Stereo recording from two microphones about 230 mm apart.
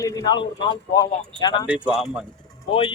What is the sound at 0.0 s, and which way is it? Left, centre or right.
Speech, centre.